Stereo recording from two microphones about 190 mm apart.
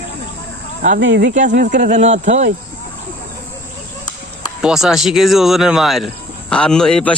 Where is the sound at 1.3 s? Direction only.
40° right (ahead or behind).